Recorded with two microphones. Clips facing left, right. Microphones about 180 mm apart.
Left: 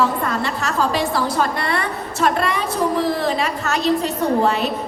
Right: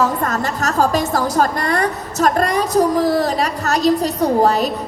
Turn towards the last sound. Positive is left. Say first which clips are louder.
# right 3 dB
turn(degrees=-40)  # may be behind; listen again after turning